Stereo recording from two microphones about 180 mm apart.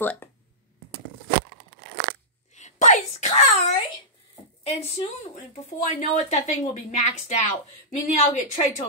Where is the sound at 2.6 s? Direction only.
45° left (ahead or behind).